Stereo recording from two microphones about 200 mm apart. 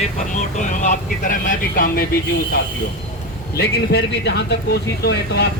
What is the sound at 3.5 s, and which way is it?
Speech, 55° left (ahead or behind).